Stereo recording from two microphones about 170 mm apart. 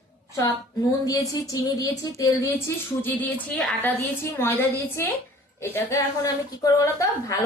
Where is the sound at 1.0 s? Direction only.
20° left (ahead or behind).